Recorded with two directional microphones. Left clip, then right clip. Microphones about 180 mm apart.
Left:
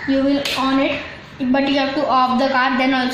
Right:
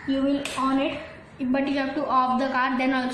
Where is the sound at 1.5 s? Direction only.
15° left (ahead or behind).